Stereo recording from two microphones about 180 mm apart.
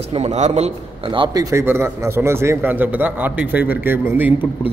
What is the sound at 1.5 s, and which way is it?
A man's voice, 15° right (ahead or behind).